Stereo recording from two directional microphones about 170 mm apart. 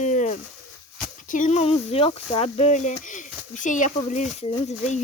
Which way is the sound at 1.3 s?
45° left (ahead or behind).